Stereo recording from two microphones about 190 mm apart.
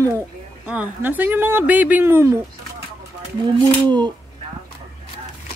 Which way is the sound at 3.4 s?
25° right (ahead or behind).